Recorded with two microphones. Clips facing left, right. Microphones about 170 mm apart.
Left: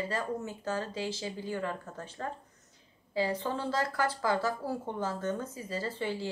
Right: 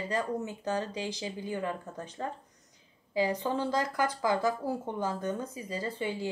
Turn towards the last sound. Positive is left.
turn(degrees=-15)  # may be behind; listen again after turning